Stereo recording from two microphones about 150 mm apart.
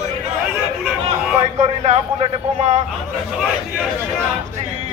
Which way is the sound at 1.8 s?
45° right (ahead or behind).